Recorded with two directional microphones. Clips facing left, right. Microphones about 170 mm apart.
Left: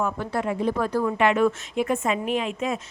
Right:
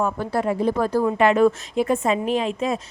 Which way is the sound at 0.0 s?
35° right (ahead or behind).